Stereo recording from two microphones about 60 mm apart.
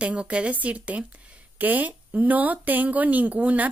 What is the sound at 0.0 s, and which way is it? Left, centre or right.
Speech, centre.